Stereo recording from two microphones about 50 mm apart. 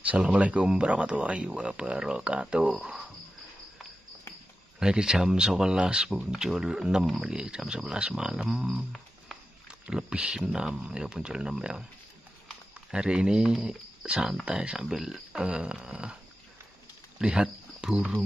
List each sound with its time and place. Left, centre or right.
0.0 s speech: right
1.5 s speech: centre
4.7 s speech: centre
9.7 s speech: centre
12.9 s speech: centre
14.8 s speech: centre
17.2 s a sound: centre